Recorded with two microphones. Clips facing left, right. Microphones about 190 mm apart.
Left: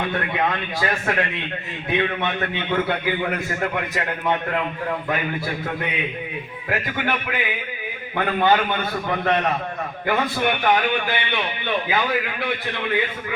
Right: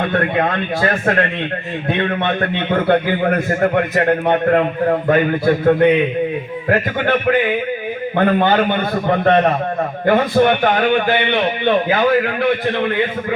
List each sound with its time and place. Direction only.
0.1 s a man's voice: 50° right (ahead or behind)